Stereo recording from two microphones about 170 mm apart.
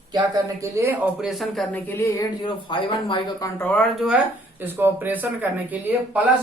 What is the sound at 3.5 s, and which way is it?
Speech, 10° left (ahead or behind).